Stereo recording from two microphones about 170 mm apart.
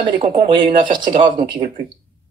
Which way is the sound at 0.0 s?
30° right (ahead or behind).